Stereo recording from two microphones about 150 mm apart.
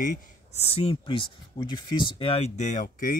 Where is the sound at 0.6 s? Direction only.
40° left (ahead or behind).